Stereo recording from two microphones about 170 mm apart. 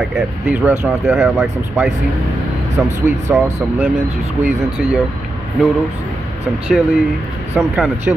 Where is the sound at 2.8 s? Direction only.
10° right (ahead or behind).